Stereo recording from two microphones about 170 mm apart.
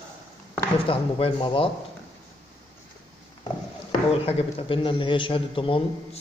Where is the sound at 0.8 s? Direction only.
30° left (ahead or behind).